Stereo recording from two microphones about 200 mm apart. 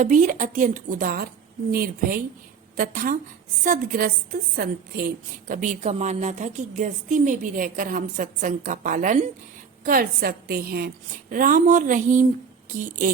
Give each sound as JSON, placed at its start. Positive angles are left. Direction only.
{"t": 0.0, "sound": "a woman's voice", "side_deg": -40}